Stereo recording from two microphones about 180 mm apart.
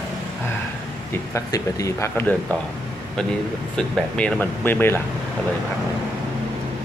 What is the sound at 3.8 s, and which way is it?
Speech, 5° left (ahead or behind).